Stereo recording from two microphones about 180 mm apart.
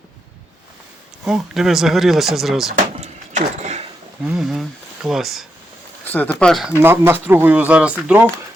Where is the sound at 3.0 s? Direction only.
40° right (ahead or behind).